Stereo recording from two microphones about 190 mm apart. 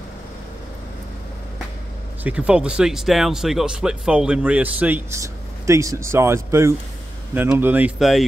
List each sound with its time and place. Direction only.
2.2 s speech: 5° right (ahead or behind)